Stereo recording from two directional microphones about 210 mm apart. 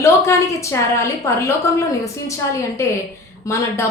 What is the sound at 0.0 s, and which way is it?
Speech, 15° left (ahead or behind).